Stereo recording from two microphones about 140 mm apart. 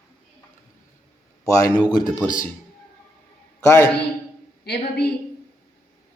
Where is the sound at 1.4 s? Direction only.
20° left (ahead or behind).